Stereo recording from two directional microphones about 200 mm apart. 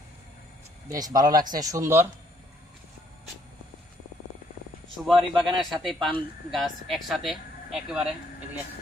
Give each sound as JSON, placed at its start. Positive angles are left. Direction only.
{"t": 0.9, "sound": "speech", "side_deg": -20}
{"t": 5.0, "sound": "a man's voice", "side_deg": 0}